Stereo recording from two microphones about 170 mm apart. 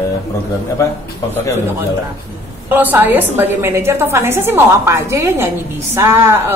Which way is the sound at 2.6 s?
10° right (ahead or behind).